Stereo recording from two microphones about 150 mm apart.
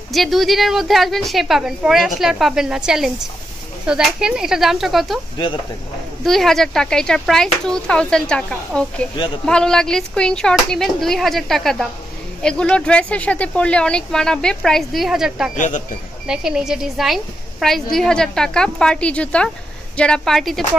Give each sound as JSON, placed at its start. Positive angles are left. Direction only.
{"t": 0.1, "sound": "a woman's voice", "side_deg": 0}
{"t": 6.2, "sound": "a woman's voice", "side_deg": 0}
{"t": 15.5, "sound": "speech", "side_deg": 60}
{"t": 16.3, "sound": "a woman's voice", "side_deg": -5}